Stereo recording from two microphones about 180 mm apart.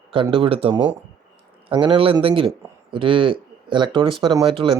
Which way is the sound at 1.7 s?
30° right (ahead or behind).